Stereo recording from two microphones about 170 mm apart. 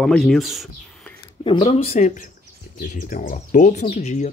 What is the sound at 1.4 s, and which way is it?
Speech, 30° left (ahead or behind).